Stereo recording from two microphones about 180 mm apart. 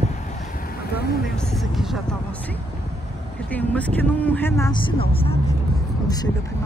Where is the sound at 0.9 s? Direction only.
60° left (ahead or behind).